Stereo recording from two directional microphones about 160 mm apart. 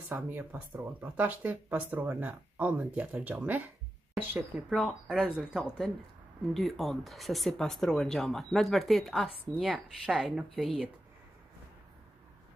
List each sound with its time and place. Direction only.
0.1 s speech: 10° right (ahead or behind)
4.7 s speech: centre (ahead or behind)
10.5 s speech: 5° left (ahead or behind)